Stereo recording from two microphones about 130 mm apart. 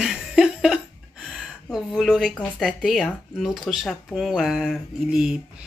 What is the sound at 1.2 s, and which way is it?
Speech, centre (ahead or behind).